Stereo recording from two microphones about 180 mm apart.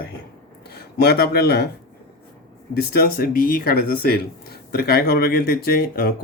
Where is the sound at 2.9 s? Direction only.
60° left (ahead or behind).